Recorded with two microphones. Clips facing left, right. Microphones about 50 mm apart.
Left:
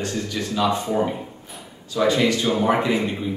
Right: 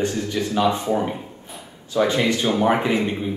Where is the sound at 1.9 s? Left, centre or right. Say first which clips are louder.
Even; right.